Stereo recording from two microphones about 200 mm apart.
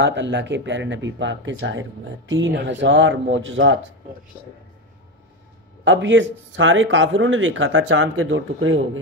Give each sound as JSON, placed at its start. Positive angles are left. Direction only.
{"t": 0.0, "sound": "speech", "side_deg": -65}
{"t": 5.9, "sound": "speech", "side_deg": -65}